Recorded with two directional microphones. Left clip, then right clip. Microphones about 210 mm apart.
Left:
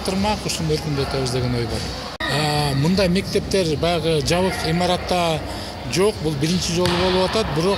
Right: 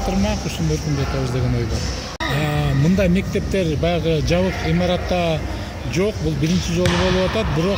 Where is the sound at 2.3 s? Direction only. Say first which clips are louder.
Left 4 dB; 45° left (ahead or behind).